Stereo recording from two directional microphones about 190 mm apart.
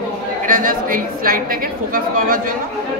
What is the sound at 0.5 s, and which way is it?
A man's voice, 45° right (ahead or behind).